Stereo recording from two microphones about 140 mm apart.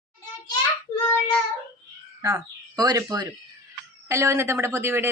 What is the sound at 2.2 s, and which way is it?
Speech, 25° right (ahead or behind).